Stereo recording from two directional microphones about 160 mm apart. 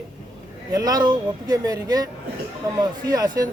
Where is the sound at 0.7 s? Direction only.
25° right (ahead or behind).